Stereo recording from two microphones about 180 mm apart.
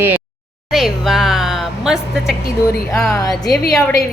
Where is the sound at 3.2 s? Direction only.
20° left (ahead or behind).